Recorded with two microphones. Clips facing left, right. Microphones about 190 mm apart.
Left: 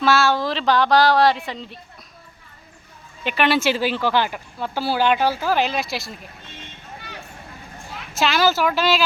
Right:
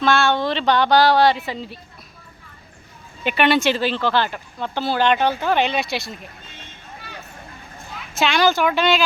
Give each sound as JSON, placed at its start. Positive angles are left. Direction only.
{"t": 0.0, "sound": "speech", "side_deg": 5}
{"t": 3.2, "sound": "speech", "side_deg": 0}
{"t": 8.1, "sound": "speech", "side_deg": 0}